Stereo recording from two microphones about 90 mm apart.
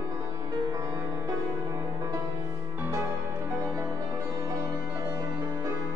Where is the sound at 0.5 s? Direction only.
45° right (ahead or behind).